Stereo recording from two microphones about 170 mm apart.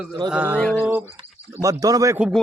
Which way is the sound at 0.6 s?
5° left (ahead or behind).